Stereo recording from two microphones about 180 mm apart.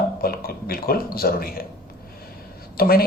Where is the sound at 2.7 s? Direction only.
55° left (ahead or behind).